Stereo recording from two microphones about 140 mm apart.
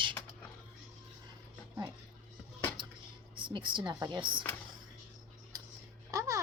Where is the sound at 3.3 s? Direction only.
35° right (ahead or behind).